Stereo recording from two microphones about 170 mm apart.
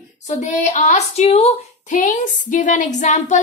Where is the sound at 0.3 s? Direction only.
45° left (ahead or behind).